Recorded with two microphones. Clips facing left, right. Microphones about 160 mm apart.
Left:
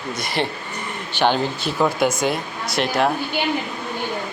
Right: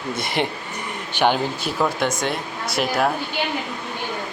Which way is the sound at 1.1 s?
10° right (ahead or behind).